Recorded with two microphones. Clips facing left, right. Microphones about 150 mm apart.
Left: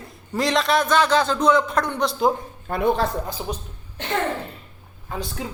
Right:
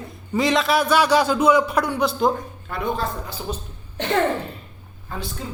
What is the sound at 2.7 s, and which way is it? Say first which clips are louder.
Speech: left 5 dB; 50° left (ahead or behind).